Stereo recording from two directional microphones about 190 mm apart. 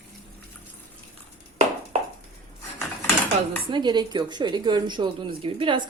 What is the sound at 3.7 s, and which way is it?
Speech, 25° right (ahead or behind).